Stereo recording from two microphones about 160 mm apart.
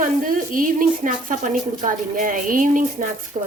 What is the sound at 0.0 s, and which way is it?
Sizzle, 55° right (ahead or behind).